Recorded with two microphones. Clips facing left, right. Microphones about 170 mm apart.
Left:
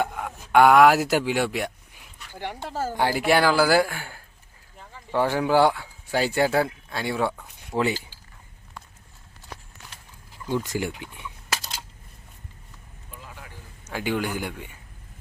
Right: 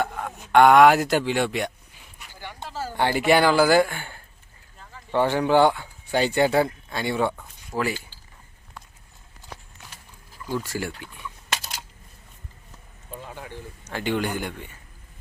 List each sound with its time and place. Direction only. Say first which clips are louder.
0.0 s speech: even; 5° left (ahead or behind)
2.3 s speech: left 7 dB; 65° left (ahead or behind)
2.6 s speech: left 3 dB; 50° left (ahead or behind)
2.9 s speech: right 2 dB; 5° left (ahead or behind)
7.8 s speech: left 2 dB; 25° left (ahead or behind)
10.3 s speech: left 2 dB; 20° left (ahead or behind)
13.2 s a sound: right 5 dB; 30° right (ahead or behind)
13.8 s a man's voice: right 1 dB; 10° left (ahead or behind)